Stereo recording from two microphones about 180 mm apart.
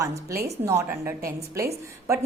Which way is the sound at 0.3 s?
15° right (ahead or behind).